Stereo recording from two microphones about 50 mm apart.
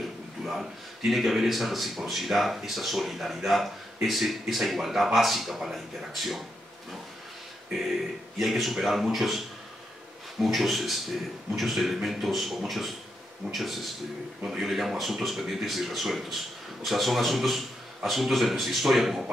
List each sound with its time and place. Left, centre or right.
0.4 s speech: centre
8.4 s speech: centre
10.4 s speech: centre